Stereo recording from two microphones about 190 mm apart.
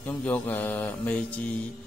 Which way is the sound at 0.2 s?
10° left (ahead or behind).